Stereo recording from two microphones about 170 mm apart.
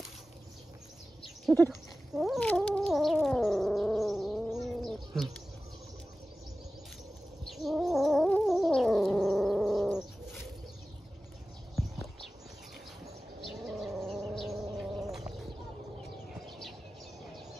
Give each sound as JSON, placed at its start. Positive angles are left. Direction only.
{"t": 1.7, "sound": "cat", "side_deg": 0}
{"t": 7.5, "sound": "cat", "side_deg": 0}
{"t": 13.5, "sound": "a sound", "side_deg": 0}
{"t": 16.4, "sound": "bird", "side_deg": 0}